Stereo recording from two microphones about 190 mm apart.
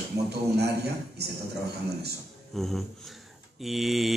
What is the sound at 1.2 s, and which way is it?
Speech, 60° right (ahead or behind).